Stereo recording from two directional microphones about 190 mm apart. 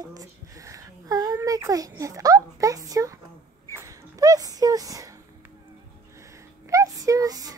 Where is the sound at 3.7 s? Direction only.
15° right (ahead or behind).